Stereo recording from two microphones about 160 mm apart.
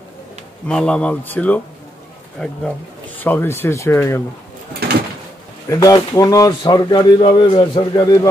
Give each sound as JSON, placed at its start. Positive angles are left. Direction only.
{"t": 0.7, "sound": "speech", "side_deg": 5}
{"t": 4.8, "sound": "a sound", "side_deg": -85}
{"t": 5.7, "sound": "speech", "side_deg": 25}